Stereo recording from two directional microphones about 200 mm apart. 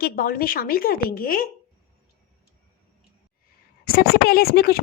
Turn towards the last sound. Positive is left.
turn(degrees=50)  # may be behind; listen again after turning